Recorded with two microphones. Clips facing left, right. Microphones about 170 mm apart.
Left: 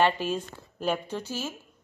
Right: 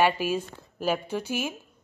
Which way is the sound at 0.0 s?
10° right (ahead or behind).